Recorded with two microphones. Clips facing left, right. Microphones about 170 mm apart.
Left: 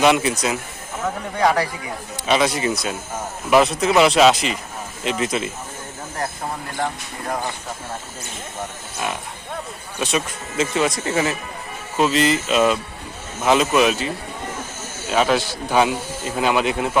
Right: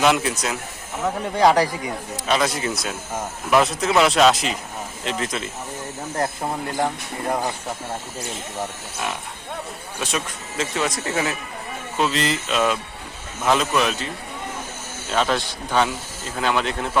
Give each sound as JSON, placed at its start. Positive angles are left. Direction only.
{"t": 0.0, "sound": "speech", "side_deg": 0}
{"t": 1.4, "sound": "speech", "side_deg": -35}
{"t": 2.2, "sound": "a man's voice", "side_deg": 0}
{"t": 10.0, "sound": "speech", "side_deg": 0}
{"t": 15.1, "sound": "a man's voice", "side_deg": 5}